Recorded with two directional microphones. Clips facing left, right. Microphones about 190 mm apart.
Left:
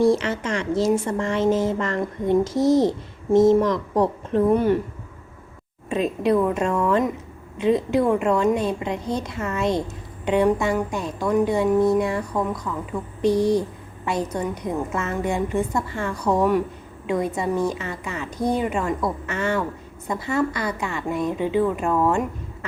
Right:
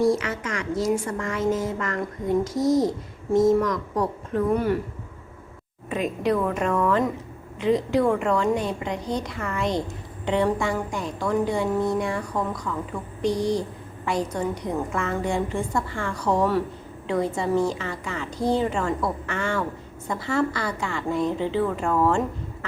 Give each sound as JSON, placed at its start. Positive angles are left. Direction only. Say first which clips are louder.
{"t": 0.0, "sound": "a woman's voice", "louder": "left 3 dB", "side_deg": 30}
{"t": 5.9, "sound": "a woman's voice", "louder": "left 3 dB", "side_deg": 25}
{"t": 12.3, "sound": "a woman's voice", "louder": "left 3 dB", "side_deg": 0}
{"t": 12.6, "sound": "a woman's voice", "louder": "left 2 dB", "side_deg": 20}